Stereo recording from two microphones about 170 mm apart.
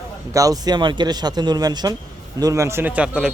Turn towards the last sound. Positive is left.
turn(degrees=-5)  # may be behind; listen again after turning